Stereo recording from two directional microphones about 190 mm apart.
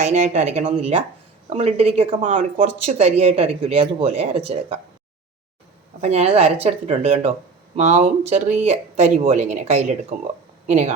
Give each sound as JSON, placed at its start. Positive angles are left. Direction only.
{"t": 0.0, "sound": "speech", "side_deg": -35}
{"t": 6.0, "sound": "speech", "side_deg": -35}